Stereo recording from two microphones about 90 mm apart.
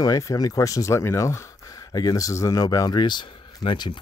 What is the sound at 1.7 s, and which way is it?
Speech, 45° left (ahead or behind).